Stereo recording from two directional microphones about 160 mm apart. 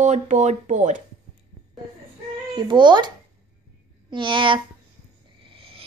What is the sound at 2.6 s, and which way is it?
A child's voice, 30° right (ahead or behind).